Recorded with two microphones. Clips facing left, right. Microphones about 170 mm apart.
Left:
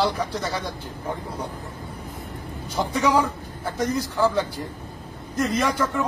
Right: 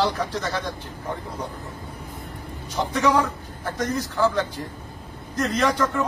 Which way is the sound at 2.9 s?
10° left (ahead or behind).